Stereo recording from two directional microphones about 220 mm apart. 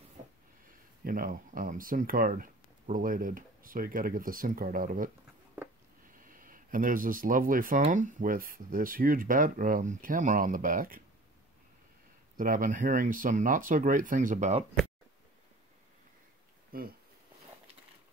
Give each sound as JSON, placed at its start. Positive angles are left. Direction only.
{"t": 1.0, "sound": "speech", "side_deg": -40}
{"t": 6.1, "sound": "speech", "side_deg": -40}
{"t": 12.4, "sound": "speech", "side_deg": -40}
{"t": 16.7, "sound": "speech", "side_deg": -45}